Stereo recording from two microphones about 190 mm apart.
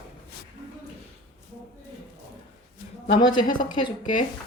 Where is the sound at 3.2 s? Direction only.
25° left (ahead or behind).